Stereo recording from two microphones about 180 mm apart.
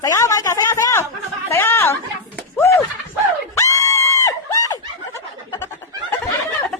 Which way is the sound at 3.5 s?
15° left (ahead or behind).